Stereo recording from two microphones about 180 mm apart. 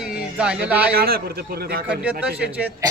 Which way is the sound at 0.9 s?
55° right (ahead or behind).